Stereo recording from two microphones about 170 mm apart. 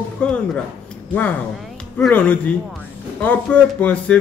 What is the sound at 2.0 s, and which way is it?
Speech, 10° left (ahead or behind).